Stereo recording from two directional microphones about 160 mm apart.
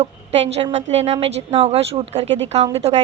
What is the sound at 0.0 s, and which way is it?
A woman's voice, 40° right (ahead or behind).